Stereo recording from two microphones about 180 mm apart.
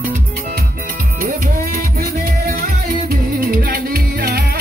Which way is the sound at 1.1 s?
50° right (ahead or behind).